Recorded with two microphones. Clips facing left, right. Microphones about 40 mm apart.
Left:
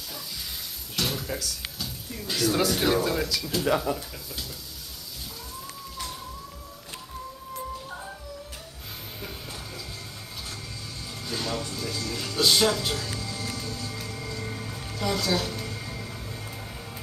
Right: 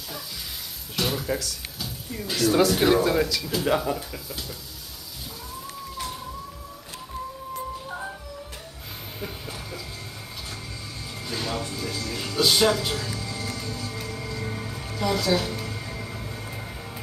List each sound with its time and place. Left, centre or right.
0.9 s a sound: centre
2.8 s speech: centre
11.2 s music: centre